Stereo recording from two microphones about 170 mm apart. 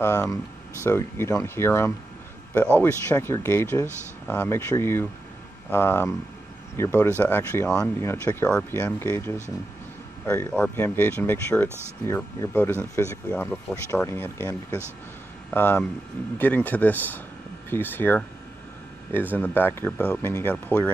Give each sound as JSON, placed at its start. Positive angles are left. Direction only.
{"t": 0.0, "sound": "speech", "side_deg": 15}
{"t": 19.3, "sound": "speech", "side_deg": 10}